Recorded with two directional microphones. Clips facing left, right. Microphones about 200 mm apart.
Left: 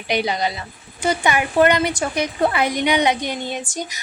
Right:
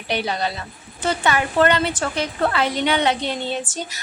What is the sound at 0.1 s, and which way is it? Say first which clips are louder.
A woman's voice: left 2 dB; 15° left (ahead or behind).